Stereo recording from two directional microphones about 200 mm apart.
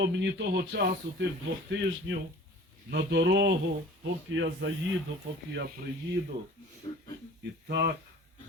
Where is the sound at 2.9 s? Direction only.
60° right (ahead or behind).